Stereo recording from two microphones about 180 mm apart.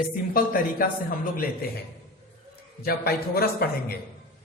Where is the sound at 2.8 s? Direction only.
55° left (ahead or behind).